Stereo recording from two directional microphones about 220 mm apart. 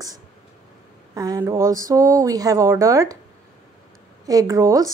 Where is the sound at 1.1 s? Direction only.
15° right (ahead or behind).